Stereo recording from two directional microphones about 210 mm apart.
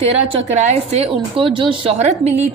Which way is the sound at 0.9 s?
25° right (ahead or behind).